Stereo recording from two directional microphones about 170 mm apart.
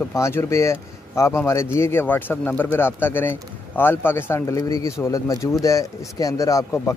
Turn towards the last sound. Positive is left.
turn(degrees=15)  # may be behind; listen again after turning